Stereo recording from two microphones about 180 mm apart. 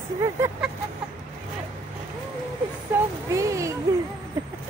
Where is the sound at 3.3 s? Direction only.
15° right (ahead or behind).